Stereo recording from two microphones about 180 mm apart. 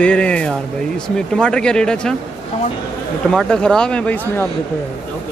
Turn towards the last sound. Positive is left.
turn(degrees=10)  # may be behind; listen again after turning